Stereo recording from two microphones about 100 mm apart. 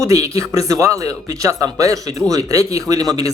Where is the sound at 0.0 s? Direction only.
30° right (ahead or behind).